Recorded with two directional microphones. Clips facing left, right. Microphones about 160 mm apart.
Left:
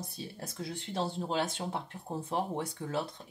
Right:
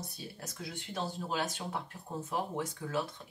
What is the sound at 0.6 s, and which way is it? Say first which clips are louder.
Speech: left 4 dB; 35° left (ahead or behind).